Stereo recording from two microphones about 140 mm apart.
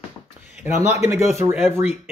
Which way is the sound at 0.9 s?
20° right (ahead or behind).